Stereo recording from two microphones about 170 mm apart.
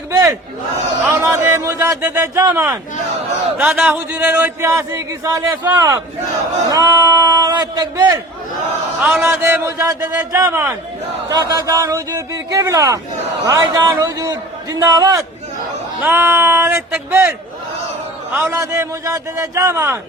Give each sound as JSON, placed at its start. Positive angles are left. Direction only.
{"t": 0.1, "sound": "battle cry", "side_deg": -20}
{"t": 1.1, "sound": "speech", "side_deg": -15}
{"t": 3.6, "sound": "a man's voice", "side_deg": -5}
{"t": 9.0, "sound": "a man's voice", "side_deg": -10}